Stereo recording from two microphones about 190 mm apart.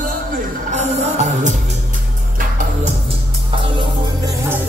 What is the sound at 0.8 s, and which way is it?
Music, 40° right (ahead or behind).